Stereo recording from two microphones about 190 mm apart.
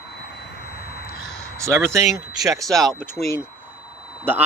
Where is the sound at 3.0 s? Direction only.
15° left (ahead or behind).